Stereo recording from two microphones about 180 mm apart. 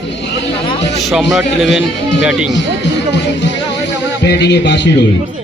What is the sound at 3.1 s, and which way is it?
Music, 70° left (ahead or behind).